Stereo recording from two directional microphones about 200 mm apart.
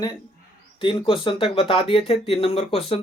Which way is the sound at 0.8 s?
25° left (ahead or behind).